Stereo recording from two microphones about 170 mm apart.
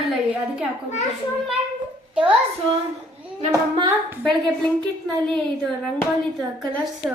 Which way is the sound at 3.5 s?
20° right (ahead or behind).